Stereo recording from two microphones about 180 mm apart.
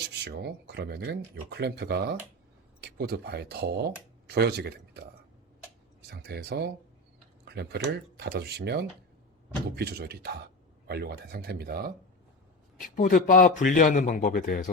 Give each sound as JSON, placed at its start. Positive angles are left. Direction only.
{"t": 0.1, "sound": "speech", "side_deg": -70}
{"t": 6.1, "sound": "speech", "side_deg": -65}
{"t": 7.4, "sound": "a sound", "side_deg": -65}
{"t": 7.9, "sound": "speech", "side_deg": -65}
{"t": 12.8, "sound": "a man's voice", "side_deg": 50}